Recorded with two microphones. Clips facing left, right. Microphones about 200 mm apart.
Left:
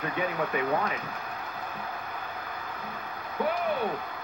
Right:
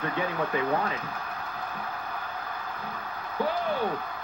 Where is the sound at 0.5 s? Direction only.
30° right (ahead or behind).